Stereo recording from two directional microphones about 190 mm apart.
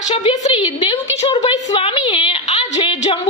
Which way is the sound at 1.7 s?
25° left (ahead or behind).